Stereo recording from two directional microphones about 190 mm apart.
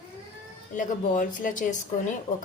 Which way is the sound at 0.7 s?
45° left (ahead or behind).